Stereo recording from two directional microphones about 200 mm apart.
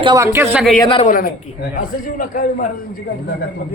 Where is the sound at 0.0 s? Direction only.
20° right (ahead or behind).